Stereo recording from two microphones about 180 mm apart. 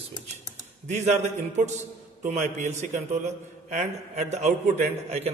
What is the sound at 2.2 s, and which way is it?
A man's voice, 40° right (ahead or behind).